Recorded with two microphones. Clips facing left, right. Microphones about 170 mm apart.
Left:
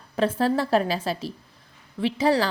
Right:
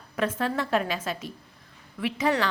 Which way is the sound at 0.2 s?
30° left (ahead or behind).